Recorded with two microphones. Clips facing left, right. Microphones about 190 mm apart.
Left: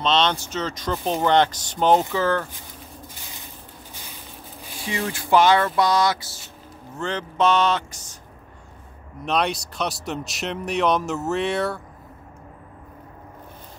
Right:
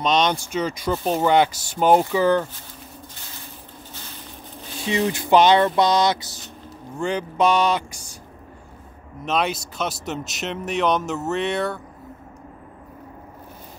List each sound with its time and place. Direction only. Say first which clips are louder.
0.0 s speech: right 1 dB; 15° right (ahead or behind)
4.8 s vehicle: right 6 dB; 20° right (ahead or behind)
7.0 s speech: right 2 dB; 10° right (ahead or behind)
9.2 s speech: even; centre (ahead or behind)